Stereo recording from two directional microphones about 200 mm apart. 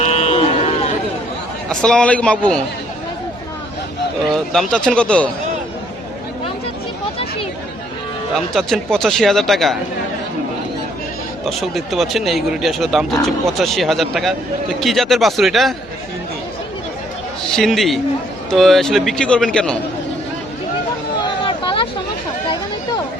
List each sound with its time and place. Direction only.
0.0 s run: 35° left (ahead or behind)
1.7 s speech: 5° left (ahead or behind)
4.3 s speech: 5° left (ahead or behind)
8.5 s speech: centre (ahead or behind)
11.4 s speech: centre (ahead or behind)
17.5 s speech: centre (ahead or behind)
21.4 s a sound: 25° left (ahead or behind)